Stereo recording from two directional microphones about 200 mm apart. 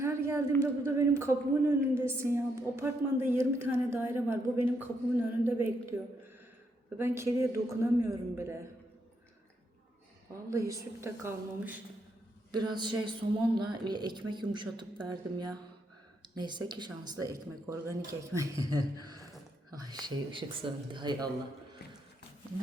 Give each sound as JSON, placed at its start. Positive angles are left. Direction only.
{"t": 0.0, "sound": "a sound", "side_deg": -15}
{"t": 0.6, "sound": "speech", "side_deg": -15}
{"t": 10.5, "sound": "speech", "side_deg": -15}
{"t": 12.5, "sound": "a woman's voice", "side_deg": -20}